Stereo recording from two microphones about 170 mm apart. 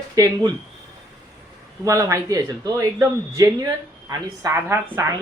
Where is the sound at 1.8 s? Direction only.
20° right (ahead or behind).